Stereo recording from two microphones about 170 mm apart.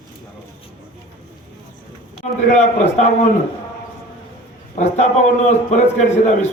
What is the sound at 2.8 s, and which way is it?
Speech, 40° left (ahead or behind).